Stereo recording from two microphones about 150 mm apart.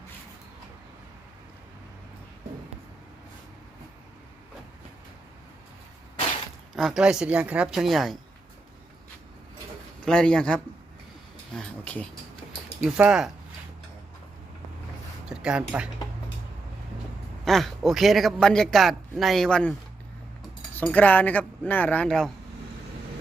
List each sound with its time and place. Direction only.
6.7 s a man's voice: centre (ahead or behind)
10.1 s speech: 5° left (ahead or behind)
11.5 s a sound: 10° left (ahead or behind)
12.8 s a man's voice: 5° right (ahead or behind)
15.3 s speech: 5° right (ahead or behind)
17.4 s a man's voice: centre (ahead or behind)
20.7 s speech: 10° left (ahead or behind)